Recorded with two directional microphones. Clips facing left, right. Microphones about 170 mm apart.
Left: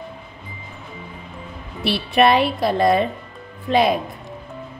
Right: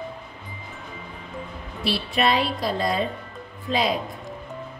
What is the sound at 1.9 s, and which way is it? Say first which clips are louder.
A woman's voice: left 6 dB; 65° left (ahead or behind).